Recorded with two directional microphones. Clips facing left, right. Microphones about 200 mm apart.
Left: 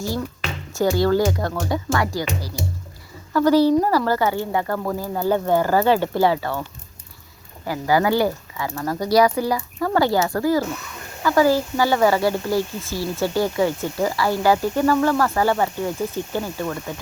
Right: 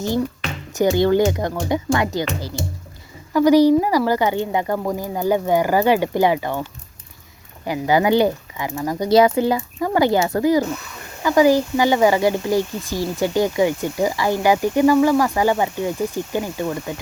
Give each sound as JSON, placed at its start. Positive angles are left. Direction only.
{"t": 0.7, "sound": "speech", "side_deg": -20}